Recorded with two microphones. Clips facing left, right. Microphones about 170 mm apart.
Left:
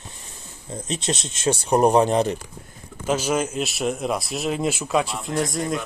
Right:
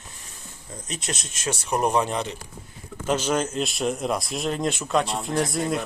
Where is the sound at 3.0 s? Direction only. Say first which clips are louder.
Left 1 dB; 10° left (ahead or behind).